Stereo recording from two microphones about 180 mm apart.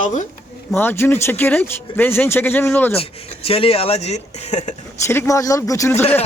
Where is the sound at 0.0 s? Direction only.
45° left (ahead or behind).